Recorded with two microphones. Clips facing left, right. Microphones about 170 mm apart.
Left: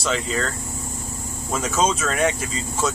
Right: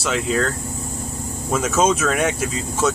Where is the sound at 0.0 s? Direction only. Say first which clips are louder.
Right 3 dB; 5° right (ahead or behind).